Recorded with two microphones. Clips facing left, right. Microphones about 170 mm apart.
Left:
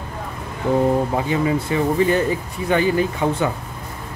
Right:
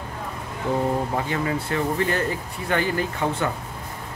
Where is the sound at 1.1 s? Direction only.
15° left (ahead or behind).